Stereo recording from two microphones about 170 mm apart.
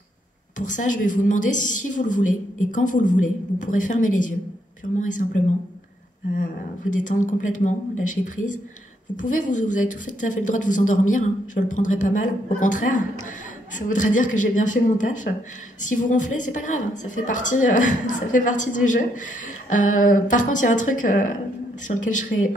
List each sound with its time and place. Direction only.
0.6 s a woman's voice: 50° left (ahead or behind)
22.3 s speech: 70° left (ahead or behind)